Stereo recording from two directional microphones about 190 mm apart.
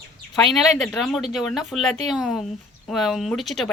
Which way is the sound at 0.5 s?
Centre (ahead or behind).